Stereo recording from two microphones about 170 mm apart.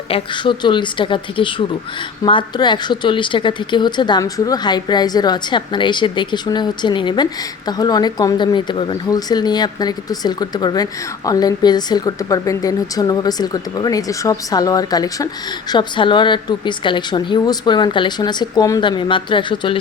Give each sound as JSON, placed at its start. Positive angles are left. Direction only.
{"t": 0.1, "sound": "a woman's voice", "side_deg": 30}